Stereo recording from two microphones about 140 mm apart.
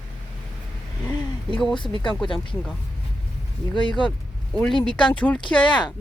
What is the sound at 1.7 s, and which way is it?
Speech, 35° left (ahead or behind).